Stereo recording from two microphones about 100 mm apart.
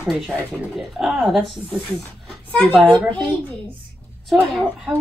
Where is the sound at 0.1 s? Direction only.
Centre (ahead or behind).